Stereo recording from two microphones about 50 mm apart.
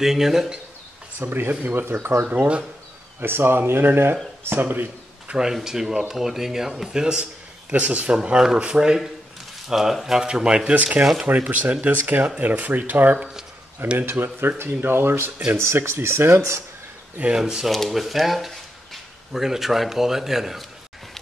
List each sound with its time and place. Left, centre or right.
0.0 s speech: centre
1.2 s speech: right
2.3 s speech: right
3.2 s speech: right
5.3 s speech: centre
7.7 s speech: right
8.1 s speech: centre
10.7 s speech: right
15.5 s speech: right
17.4 s speech: centre
17.6 s speech: centre